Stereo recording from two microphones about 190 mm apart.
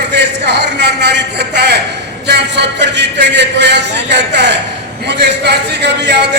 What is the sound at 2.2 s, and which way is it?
A man's voice, 65° right (ahead or behind).